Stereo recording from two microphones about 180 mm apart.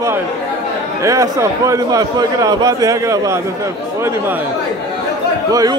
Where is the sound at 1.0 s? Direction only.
20° right (ahead or behind).